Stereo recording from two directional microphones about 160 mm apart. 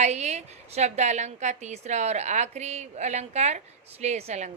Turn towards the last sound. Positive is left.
turn(degrees=-45)  # may be behind; listen again after turning